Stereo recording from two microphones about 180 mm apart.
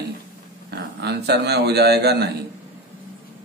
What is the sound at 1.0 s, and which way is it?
A man's voice, 70° right (ahead or behind).